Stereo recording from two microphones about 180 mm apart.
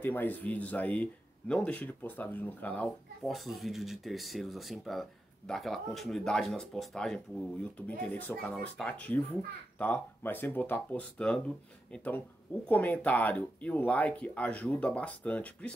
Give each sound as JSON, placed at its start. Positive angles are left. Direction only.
{"t": 0.0, "sound": "a child's voice", "side_deg": 10}